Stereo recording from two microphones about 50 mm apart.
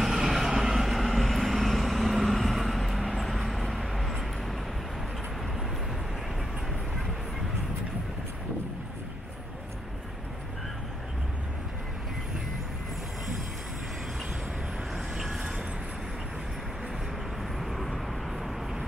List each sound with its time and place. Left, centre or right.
0.0 s vehicle: centre
15.0 s vehicle: centre
17.4 s vehicle: centre